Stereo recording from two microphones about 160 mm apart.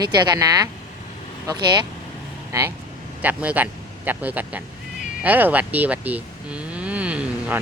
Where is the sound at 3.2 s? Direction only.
10° right (ahead or behind).